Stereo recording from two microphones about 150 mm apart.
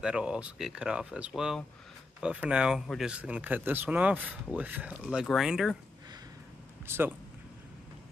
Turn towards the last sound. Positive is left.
turn(degrees=-15)  # may be behind; listen again after turning